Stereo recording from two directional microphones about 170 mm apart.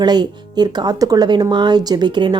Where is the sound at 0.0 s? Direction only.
25° right (ahead or behind).